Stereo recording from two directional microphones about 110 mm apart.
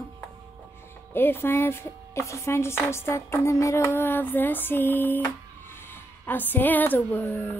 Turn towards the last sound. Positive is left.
turn(degrees=15)  # may be behind; listen again after turning